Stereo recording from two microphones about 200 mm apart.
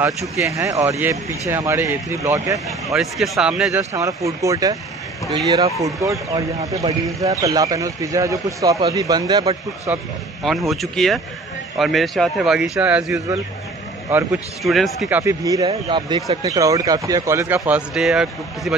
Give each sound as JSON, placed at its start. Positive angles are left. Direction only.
{"t": 0.6, "sound": "speech", "side_deg": -15}
{"t": 2.9, "sound": "a man's voice", "side_deg": 0}
{"t": 3.7, "sound": "a man's voice", "side_deg": -15}